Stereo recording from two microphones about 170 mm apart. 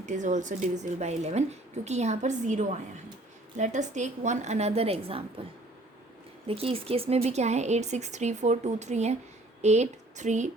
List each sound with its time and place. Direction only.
0.0 s speech: 45° right (ahead or behind)
6.5 s speech: 35° right (ahead or behind)